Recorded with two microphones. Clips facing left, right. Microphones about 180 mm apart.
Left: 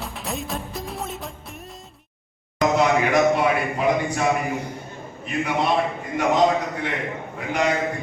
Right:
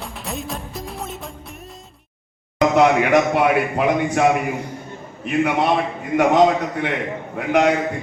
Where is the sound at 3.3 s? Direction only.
65° right (ahead or behind).